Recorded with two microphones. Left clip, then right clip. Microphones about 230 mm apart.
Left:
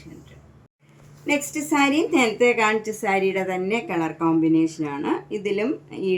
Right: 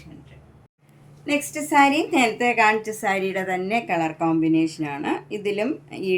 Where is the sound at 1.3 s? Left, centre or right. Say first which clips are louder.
Right 1 dB; right.